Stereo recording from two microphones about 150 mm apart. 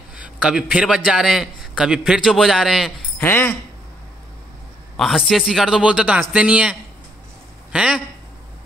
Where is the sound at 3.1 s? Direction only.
15° left (ahead or behind).